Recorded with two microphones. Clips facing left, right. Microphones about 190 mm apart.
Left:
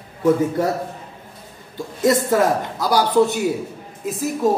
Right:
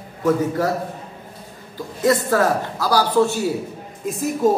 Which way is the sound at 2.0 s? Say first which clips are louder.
Left 1 dB; 20° left (ahead or behind).